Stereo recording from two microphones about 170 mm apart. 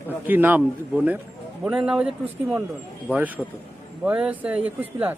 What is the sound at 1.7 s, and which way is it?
A man's voice, 5° right (ahead or behind).